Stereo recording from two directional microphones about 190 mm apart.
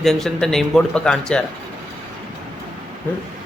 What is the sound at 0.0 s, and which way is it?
Speech, centre (ahead or behind).